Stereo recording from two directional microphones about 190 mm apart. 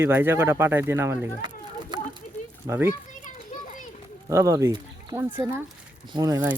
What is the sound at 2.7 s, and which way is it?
Speech, 20° right (ahead or behind).